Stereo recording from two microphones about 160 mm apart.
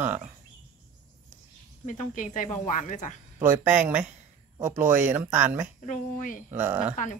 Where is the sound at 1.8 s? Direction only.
55° left (ahead or behind).